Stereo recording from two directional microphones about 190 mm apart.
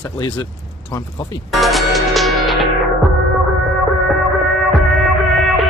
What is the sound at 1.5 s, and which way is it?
Music, centre (ahead or behind).